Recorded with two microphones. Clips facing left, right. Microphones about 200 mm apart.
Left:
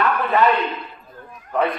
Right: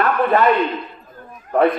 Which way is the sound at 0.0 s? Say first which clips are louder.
Right 2 dB; 55° right (ahead or behind).